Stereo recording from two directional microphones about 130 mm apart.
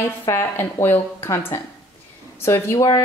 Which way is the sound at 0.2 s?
20° left (ahead or behind).